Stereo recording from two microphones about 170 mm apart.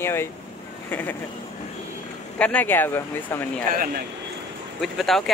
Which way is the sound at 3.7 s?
55° right (ahead or behind).